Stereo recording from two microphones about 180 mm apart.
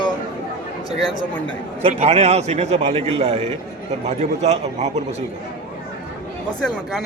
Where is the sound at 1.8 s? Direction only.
35° right (ahead or behind).